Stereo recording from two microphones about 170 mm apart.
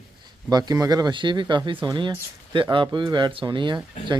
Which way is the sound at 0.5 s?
25° right (ahead or behind).